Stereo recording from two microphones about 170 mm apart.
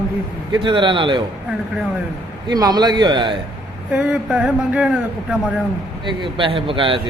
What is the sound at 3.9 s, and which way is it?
Speech, 5° right (ahead or behind).